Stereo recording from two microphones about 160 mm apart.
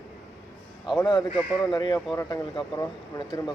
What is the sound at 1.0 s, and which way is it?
Speech, 25° left (ahead or behind).